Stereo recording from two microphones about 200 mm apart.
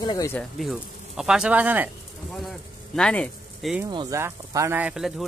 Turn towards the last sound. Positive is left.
turn(degrees=0)  # may be behind; listen again after turning